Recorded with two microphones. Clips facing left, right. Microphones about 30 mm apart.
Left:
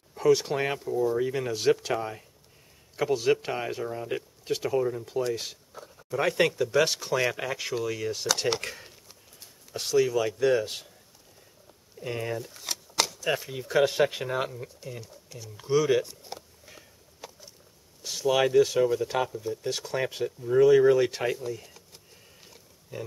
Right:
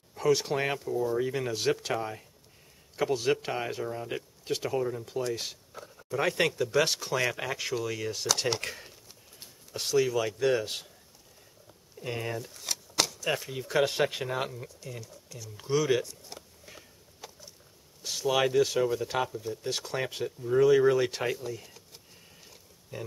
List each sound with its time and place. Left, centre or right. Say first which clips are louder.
0.1 s speech: left 3 dB; centre
12.0 s speech: left 2 dB; centre
15.0 s speech: left 1 dB; centre
15.5 s speech: left 3 dB; centre
16.0 s a sound: left 4 dB; left
16.6 s a sound: even; centre
18.0 s speech: left 2 dB; centre